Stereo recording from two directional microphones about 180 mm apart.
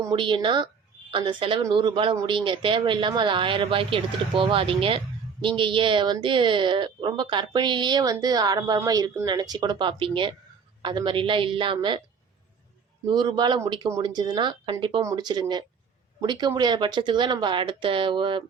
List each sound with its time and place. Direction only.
0.0 s speech: 25° right (ahead or behind)
13.1 s speech: 25° right (ahead or behind)